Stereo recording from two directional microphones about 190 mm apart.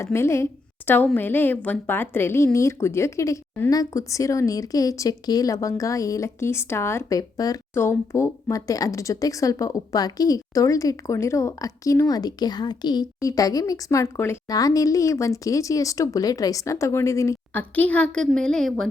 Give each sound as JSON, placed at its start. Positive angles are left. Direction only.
{"t": 0.0, "sound": "speech", "side_deg": 15}